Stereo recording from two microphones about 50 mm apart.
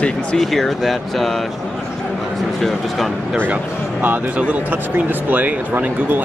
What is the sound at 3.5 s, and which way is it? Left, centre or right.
Speech, right.